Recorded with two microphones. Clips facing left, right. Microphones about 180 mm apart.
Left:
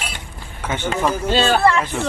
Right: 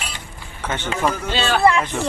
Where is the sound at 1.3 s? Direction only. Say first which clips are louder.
Left 7 dB; 45° left (ahead or behind).